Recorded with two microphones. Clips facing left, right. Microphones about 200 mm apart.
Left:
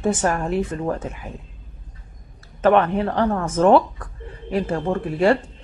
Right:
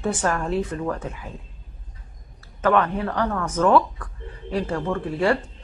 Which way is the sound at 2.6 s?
25° left (ahead or behind).